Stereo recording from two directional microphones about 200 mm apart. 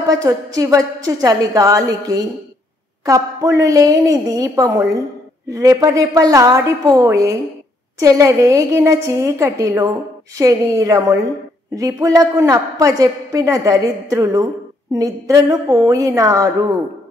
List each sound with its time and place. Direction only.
0.1 s a woman's voice: 15° right (ahead or behind)